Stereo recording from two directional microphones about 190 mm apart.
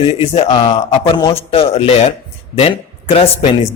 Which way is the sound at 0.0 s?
30° left (ahead or behind).